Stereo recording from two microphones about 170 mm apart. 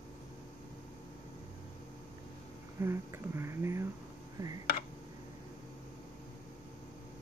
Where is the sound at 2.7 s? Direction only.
15° right (ahead or behind).